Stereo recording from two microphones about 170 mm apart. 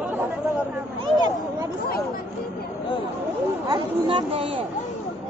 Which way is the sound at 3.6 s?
30° right (ahead or behind).